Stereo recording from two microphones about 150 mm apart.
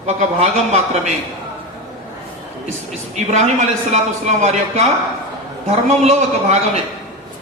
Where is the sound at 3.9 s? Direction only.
50° right (ahead or behind).